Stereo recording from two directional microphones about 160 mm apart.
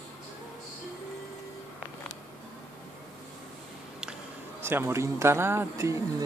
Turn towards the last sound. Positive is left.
turn(degrees=-20)  # may be behind; listen again after turning